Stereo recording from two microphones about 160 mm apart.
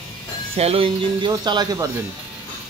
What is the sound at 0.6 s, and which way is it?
Speech, 40° right (ahead or behind).